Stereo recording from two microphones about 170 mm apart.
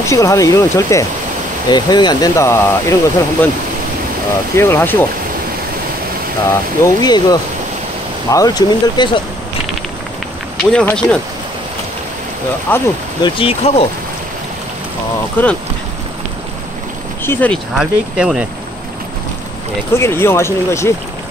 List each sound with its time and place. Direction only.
0.0 s speech: 15° left (ahead or behind)
4.6 s speech: 15° left (ahead or behind)
6.8 s speech: 25° left (ahead or behind)
10.6 s speech: 5° left (ahead or behind)
12.7 s speech: 10° left (ahead or behind)
13.2 s speech: 35° left (ahead or behind)
15.4 s speech: 10° left (ahead or behind)
17.2 s speech: 10° left (ahead or behind)
17.7 s speech: 5° right (ahead or behind)
19.9 s speech: 15° left (ahead or behind)